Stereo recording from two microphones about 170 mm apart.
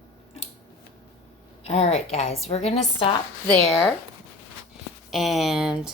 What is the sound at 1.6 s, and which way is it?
A woman's voice, 40° left (ahead or behind).